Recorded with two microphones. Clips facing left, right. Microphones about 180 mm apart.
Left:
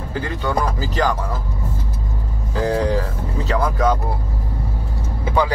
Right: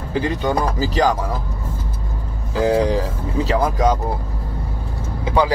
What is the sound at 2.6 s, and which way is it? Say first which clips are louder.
Speech: right 3 dB; 10° right (ahead or behind).